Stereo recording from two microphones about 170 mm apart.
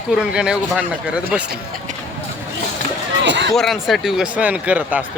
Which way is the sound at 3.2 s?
90° right.